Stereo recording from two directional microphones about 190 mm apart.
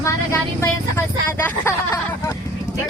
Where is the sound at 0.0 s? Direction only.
15° left (ahead or behind).